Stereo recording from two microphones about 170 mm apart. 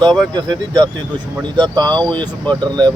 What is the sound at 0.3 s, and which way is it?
Speech, 25° right (ahead or behind).